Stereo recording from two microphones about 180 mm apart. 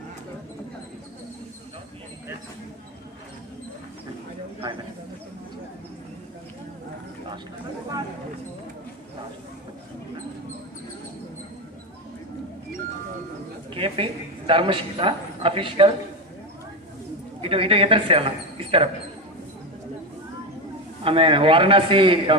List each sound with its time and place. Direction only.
13.7 s a woman's voice: 30° right (ahead or behind)
17.4 s speech: 30° right (ahead or behind)
21.0 s a man's voice: 30° right (ahead or behind)